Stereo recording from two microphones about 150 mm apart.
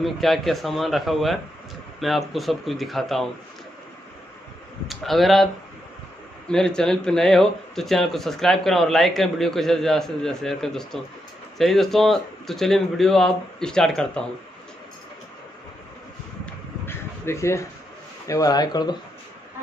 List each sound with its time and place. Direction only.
0.0 s speech: centre (ahead or behind)
4.8 s speech: centre (ahead or behind)
16.4 s a sound: 15° left (ahead or behind)
18.2 s a man's voice: 25° left (ahead or behind)